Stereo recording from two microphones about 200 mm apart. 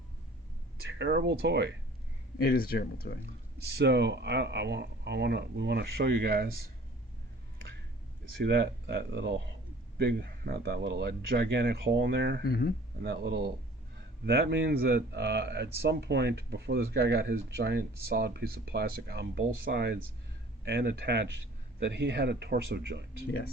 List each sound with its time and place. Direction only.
0.8 s speech: 60° right (ahead or behind)
2.4 s speech: 50° left (ahead or behind)
3.8 s speech: 60° right (ahead or behind)
8.4 s speech: 55° right (ahead or behind)
12.5 s speech: 50° left (ahead or behind)
13.0 s speech: 55° right (ahead or behind)